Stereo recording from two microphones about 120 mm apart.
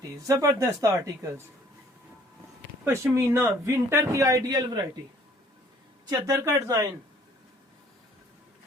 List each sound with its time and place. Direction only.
0.1 s a man's voice: 30° right (ahead or behind)
2.8 s a man's voice: 20° right (ahead or behind)
6.1 s a man's voice: 30° right (ahead or behind)